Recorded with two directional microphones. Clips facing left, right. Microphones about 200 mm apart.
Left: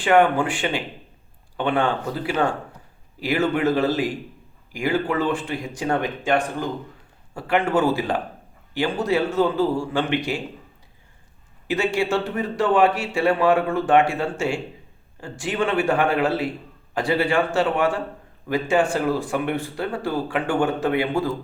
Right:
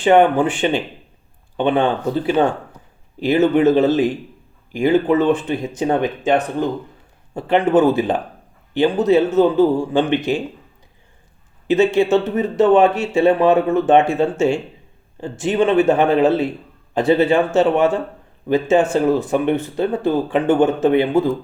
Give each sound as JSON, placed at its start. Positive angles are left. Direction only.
{"t": 0.0, "sound": "speech", "side_deg": -20}
{"t": 11.7, "sound": "speech", "side_deg": -20}